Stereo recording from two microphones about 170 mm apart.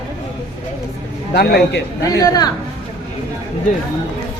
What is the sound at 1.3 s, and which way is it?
Speech, 65° left (ahead or behind).